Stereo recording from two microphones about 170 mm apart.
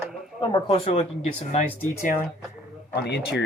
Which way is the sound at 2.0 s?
55° left (ahead or behind).